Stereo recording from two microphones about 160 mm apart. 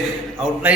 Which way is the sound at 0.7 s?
10° right (ahead or behind).